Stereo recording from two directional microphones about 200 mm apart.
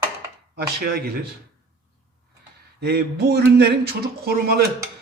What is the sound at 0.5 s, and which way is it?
Speech, 50° right (ahead or behind).